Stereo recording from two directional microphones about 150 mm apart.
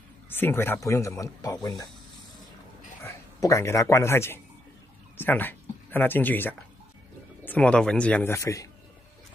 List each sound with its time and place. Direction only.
0.3 s speech: 15° left (ahead or behind)
3.0 s speech: 20° left (ahead or behind)